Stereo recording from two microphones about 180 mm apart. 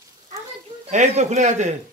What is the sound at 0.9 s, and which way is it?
Speech, 40° right (ahead or behind).